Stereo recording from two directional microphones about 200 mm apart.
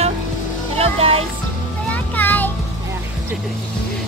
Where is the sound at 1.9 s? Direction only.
10° left (ahead or behind).